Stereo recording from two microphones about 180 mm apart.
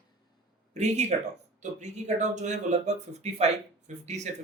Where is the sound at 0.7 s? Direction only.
40° right (ahead or behind).